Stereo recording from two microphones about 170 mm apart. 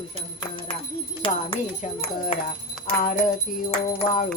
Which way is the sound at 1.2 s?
30° left (ahead or behind).